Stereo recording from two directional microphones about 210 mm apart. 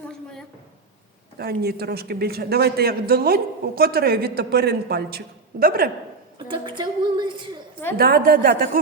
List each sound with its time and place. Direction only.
0.1 s a sound: 5° left (ahead or behind)
1.4 s a man's voice: 45° right (ahead or behind)
6.5 s music: 20° right (ahead or behind)
7.9 s a man's voice: 45° right (ahead or behind)